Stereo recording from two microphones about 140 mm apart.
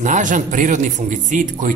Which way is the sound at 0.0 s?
65° right (ahead or behind).